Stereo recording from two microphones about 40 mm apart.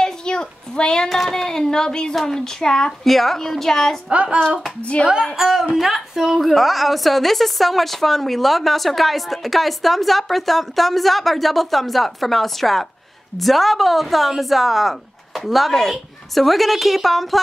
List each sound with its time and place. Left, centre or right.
0.0 s a sound: centre
1.0 s a woman's voice: centre
1.3 s a woman's voice: centre
4.1 s speech: right
5.2 s a woman's voice: centre